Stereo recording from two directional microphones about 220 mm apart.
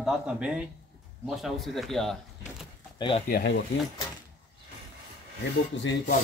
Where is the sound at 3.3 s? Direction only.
50° left (ahead or behind).